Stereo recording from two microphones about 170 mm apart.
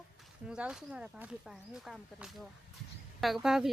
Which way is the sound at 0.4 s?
5° right (ahead or behind).